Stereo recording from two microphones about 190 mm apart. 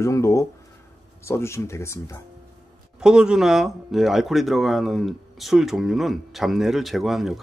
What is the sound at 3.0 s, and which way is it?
Speech, 5° right (ahead or behind).